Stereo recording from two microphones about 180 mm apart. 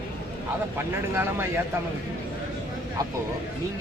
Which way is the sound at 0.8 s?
15° right (ahead or behind).